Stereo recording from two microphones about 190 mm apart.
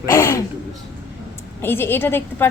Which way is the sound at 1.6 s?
10° left (ahead or behind).